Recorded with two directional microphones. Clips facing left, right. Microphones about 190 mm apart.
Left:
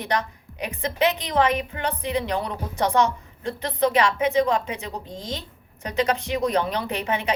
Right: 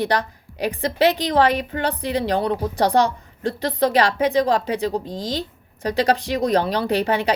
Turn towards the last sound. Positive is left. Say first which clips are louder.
# right 6 dB
turn(degrees=-35)  # may be behind; listen again after turning